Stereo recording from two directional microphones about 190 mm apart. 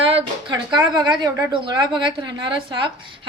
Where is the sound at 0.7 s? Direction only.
5° right (ahead or behind).